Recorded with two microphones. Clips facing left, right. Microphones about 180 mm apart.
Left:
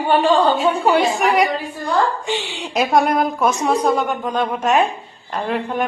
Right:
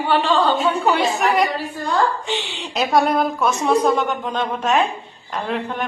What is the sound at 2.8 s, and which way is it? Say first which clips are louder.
A woman's voice: left 1 dB; centre (ahead or behind).